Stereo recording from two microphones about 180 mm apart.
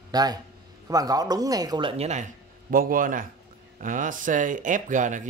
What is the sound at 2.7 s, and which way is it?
Speech, 50° right (ahead or behind).